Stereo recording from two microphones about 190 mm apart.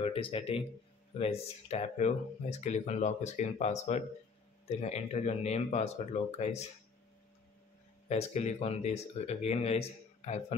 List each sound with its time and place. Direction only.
0.0 s speech: 30° left (ahead or behind)
8.1 s speech: 35° left (ahead or behind)